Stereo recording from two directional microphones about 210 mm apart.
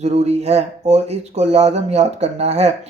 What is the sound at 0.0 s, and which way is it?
Speech, 30° right (ahead or behind).